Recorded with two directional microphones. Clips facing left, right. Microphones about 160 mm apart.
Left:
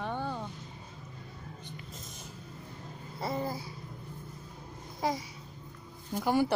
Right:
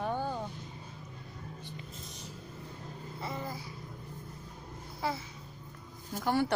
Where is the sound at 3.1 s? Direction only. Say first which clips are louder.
Left 6 dB; 35° left (ahead or behind).